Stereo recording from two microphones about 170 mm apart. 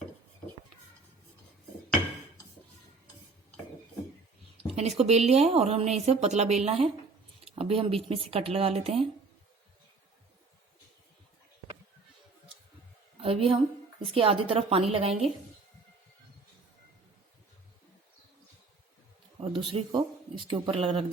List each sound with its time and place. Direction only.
4.6 s speech: 40° right (ahead or behind)
13.2 s a woman's voice: 35° right (ahead or behind)
19.4 s speech: 30° right (ahead or behind)